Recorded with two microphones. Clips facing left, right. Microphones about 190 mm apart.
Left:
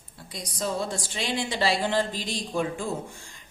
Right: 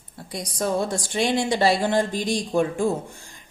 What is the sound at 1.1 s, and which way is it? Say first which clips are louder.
A woman's voice: right 8 dB; 50° right (ahead or behind).